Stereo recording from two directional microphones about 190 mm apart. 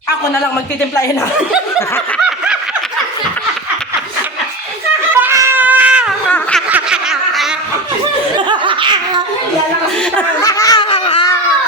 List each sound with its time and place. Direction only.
5.2 s cat: 15° right (ahead or behind)
6.2 s snicker: 10° left (ahead or behind)
6.7 s snicker: 5° right (ahead or behind)
8.4 s laughter: 25° right (ahead or behind)
10.4 s baby laughter: 20° left (ahead or behind)